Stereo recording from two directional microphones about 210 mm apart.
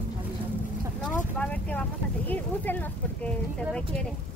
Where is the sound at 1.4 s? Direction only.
5° left (ahead or behind).